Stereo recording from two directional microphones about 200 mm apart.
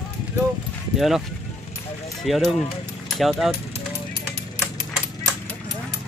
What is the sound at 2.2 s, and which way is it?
Speech, centre (ahead or behind).